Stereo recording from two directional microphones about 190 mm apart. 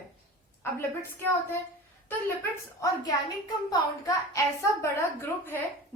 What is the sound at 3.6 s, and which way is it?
A woman's voice, 20° left (ahead or behind).